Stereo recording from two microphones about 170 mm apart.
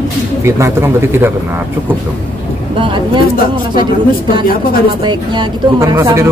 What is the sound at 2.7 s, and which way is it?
Speech, 30° right (ahead or behind).